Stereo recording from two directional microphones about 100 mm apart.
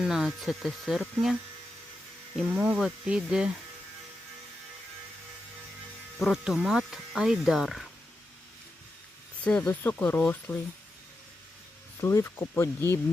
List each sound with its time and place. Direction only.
0.0 s speech: 5° right (ahead or behind)
2.5 s speech: 10° right (ahead or behind)
6.1 s speech: centre (ahead or behind)
9.4 s speech: 10° left (ahead or behind)
11.9 s speech: 25° left (ahead or behind)